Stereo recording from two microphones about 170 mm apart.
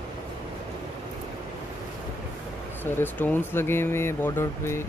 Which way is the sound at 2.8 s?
10° left (ahead or behind).